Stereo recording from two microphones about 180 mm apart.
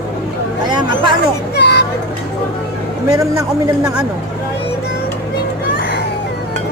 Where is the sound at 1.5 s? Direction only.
70° left (ahead or behind).